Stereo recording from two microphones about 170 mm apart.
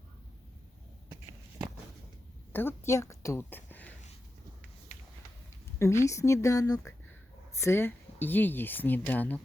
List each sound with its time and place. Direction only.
2.5 s a woman's voice: 10° left (ahead or behind)
5.8 s speech: 15° left (ahead or behind)